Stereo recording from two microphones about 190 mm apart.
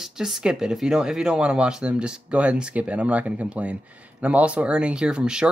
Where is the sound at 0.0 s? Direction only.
Centre (ahead or behind).